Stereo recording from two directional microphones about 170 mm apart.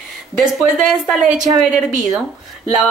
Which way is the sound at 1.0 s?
5° right (ahead or behind).